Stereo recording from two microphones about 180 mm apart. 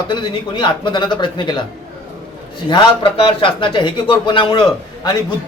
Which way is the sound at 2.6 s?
30° left (ahead or behind).